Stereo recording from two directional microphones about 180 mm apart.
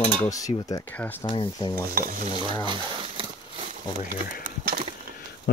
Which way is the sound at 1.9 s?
55° right (ahead or behind).